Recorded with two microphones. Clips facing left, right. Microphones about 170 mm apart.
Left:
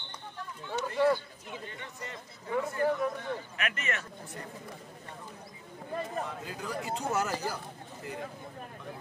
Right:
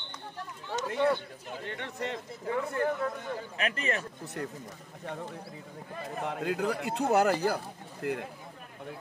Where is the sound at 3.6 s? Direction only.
30° right (ahead or behind).